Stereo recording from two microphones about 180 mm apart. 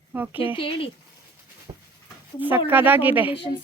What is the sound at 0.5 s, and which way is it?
Speech, 30° left (ahead or behind).